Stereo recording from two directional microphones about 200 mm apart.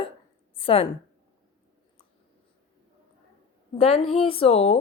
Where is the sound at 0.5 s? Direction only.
25° left (ahead or behind).